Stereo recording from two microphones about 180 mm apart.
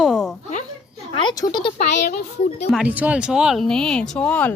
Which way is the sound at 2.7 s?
10° right (ahead or behind).